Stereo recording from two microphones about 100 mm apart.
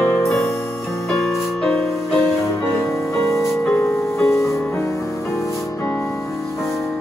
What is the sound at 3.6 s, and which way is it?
Music, 20° left (ahead or behind).